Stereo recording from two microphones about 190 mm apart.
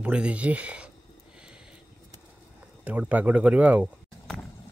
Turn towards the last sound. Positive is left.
turn(degrees=-10)  # may be behind; listen again after turning